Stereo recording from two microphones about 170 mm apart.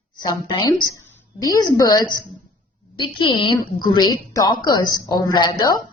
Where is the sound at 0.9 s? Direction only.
20° left (ahead or behind).